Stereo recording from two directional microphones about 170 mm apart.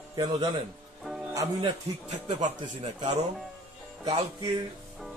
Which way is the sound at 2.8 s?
35° right (ahead or behind).